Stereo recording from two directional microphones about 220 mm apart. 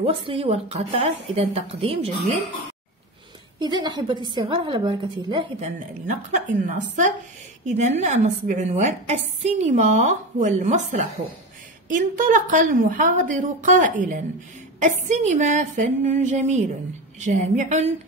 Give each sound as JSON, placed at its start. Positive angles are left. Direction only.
{"t": 0.0, "sound": "a woman's voice", "side_deg": -25}
{"t": 3.5, "sound": "a woman's voice", "side_deg": -20}
{"t": 6.0, "sound": "a woman's voice", "side_deg": -35}